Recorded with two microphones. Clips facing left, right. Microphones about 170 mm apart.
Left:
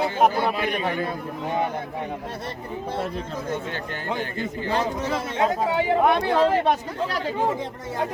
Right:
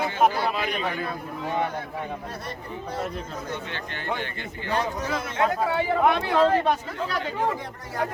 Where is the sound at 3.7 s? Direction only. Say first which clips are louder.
Left 2 dB; 40° left (ahead or behind).